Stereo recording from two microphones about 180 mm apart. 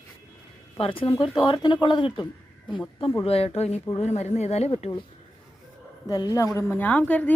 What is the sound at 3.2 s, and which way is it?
Speech, 35° left (ahead or behind).